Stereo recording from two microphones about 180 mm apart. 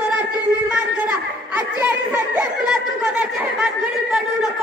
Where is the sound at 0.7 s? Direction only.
10° right (ahead or behind).